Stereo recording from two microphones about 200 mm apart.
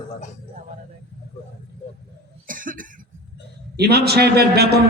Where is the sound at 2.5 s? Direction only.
40° right (ahead or behind).